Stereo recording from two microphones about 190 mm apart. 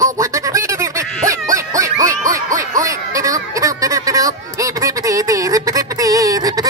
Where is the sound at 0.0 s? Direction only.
15° right (ahead or behind).